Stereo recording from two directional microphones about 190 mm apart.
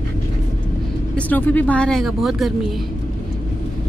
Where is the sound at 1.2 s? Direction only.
10° left (ahead or behind).